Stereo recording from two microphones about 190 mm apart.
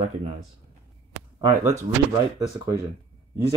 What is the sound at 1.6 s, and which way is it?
Speech, 10° right (ahead or behind).